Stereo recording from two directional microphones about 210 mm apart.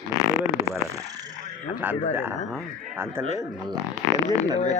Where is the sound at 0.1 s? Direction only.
15° left (ahead or behind).